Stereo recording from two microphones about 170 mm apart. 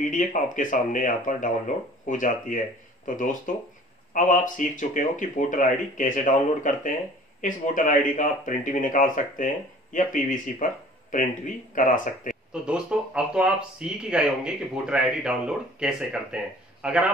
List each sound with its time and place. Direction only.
0.0 s speech: 50° left (ahead or behind)
12.6 s speech: 5° right (ahead or behind)